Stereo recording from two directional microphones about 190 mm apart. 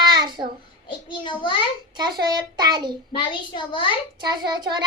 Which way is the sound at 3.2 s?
25° left (ahead or behind).